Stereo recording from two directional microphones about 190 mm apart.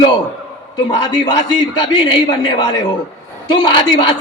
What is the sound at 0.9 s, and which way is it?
A man's voice, 25° left (ahead or behind).